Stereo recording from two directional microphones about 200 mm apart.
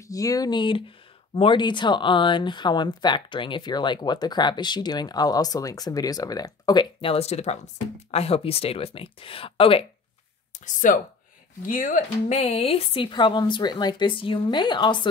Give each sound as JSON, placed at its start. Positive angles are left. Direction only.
{"t": 0.1, "sound": "speech", "side_deg": 15}
{"t": 10.6, "sound": "speech", "side_deg": 40}